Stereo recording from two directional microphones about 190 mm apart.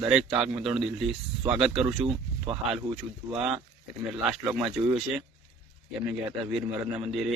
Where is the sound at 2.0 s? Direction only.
30° right (ahead or behind).